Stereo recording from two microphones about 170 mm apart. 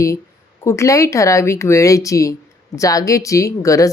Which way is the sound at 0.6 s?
15° left (ahead or behind).